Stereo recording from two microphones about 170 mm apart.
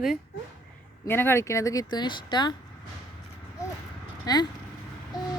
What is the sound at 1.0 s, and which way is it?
Speech, 15° left (ahead or behind).